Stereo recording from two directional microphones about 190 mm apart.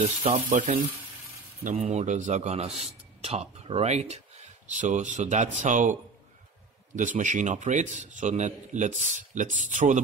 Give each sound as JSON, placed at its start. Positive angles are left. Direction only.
{"t": 0.2, "sound": "a man's voice", "side_deg": -45}
{"t": 7.0, "sound": "a man's voice", "side_deg": -40}